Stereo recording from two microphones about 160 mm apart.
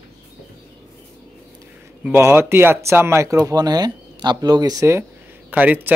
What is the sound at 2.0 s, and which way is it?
Speech, 15° right (ahead or behind).